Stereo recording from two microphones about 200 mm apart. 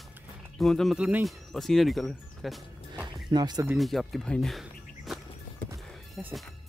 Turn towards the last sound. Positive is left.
turn(degrees=0)  # may be behind; listen again after turning